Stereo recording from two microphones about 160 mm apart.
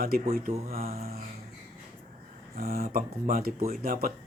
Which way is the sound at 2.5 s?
65° right (ahead or behind).